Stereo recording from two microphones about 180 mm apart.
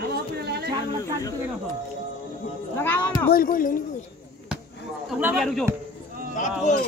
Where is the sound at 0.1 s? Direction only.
65° right (ahead or behind).